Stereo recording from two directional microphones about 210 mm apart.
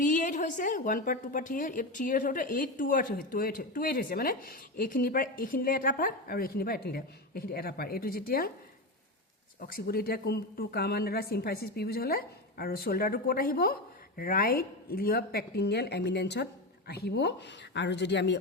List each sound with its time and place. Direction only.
0.0 s a woman's voice: 35° left (ahead or behind)
9.6 s speech: 45° left (ahead or behind)